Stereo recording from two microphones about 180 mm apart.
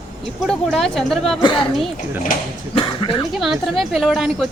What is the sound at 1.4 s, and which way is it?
Speech, 25° left (ahead or behind).